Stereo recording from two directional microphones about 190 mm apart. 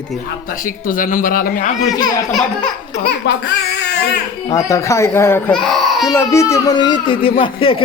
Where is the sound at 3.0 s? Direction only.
60° left (ahead or behind).